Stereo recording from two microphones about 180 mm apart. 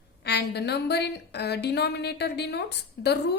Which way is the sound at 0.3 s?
70° left (ahead or behind).